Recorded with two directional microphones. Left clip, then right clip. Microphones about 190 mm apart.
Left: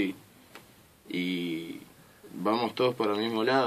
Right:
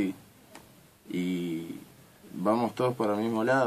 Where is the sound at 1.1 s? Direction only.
5° left (ahead or behind).